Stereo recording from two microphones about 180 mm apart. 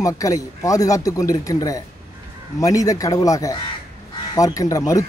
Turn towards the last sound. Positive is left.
turn(degrees=20)  # may be behind; listen again after turning